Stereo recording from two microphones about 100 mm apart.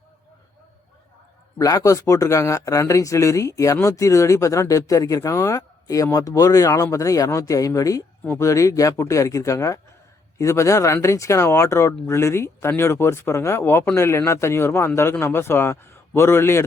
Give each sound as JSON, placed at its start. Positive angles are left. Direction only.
{"t": 1.5, "sound": "speech", "side_deg": 35}